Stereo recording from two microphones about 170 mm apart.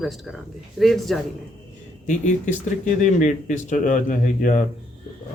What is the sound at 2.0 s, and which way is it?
Speech, 45° left (ahead or behind).